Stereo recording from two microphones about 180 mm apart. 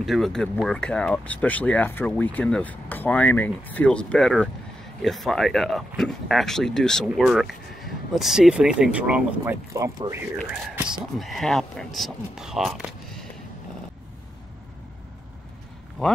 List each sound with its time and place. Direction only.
0.0 s speech: centre (ahead or behind)
9.4 s speech: 15° right (ahead or behind)
10.4 s speech: centre (ahead or behind)
16.0 s speech: 5° left (ahead or behind)